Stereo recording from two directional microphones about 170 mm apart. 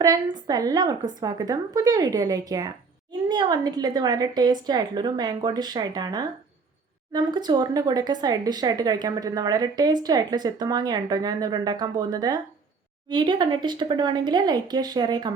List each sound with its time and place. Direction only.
0.0 s a woman's voice: 20° right (ahead or behind)